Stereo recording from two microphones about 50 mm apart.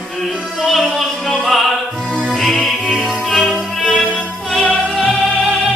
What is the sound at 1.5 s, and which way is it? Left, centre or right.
Opera, centre.